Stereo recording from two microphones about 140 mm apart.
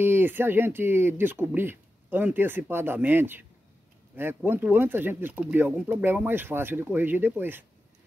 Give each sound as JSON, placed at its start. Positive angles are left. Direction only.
{"t": 0.0, "sound": "speech", "side_deg": -15}